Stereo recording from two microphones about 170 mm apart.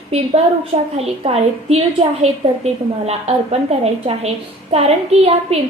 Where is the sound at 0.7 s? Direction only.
35° right (ahead or behind).